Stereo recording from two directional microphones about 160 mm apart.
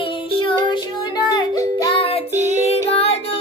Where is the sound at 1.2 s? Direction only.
20° left (ahead or behind).